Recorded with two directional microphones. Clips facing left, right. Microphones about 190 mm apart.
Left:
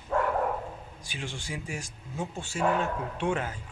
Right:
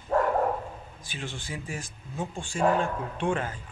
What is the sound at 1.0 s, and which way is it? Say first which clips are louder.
Speech: right 1 dB; 10° left (ahead or behind).